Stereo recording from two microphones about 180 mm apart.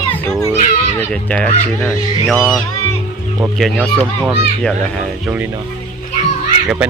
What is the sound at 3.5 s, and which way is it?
Speech, centre (ahead or behind).